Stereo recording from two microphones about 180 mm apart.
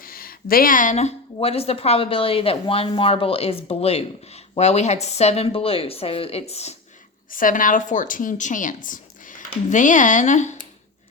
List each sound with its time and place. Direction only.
0.0 s a woman's voice: 55° left (ahead or behind); by 6.7 s 35° left (ahead or behind)
7.3 s a woman's voice: 50° left (ahead or behind)